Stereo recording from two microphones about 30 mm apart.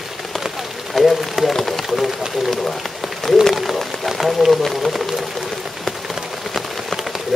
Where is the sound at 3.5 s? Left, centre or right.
Centre.